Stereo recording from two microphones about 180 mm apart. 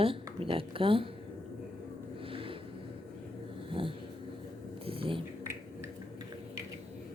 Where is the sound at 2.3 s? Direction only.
30° right (ahead or behind).